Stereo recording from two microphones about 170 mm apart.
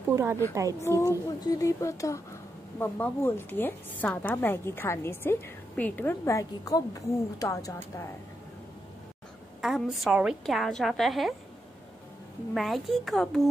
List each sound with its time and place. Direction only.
0.1 s a woman's voice: 15° right (ahead or behind)
0.8 s a woman's voice: 20° left (ahead or behind)
9.6 s a woman's voice: centre (ahead or behind)
12.5 s a woman's voice: centre (ahead or behind)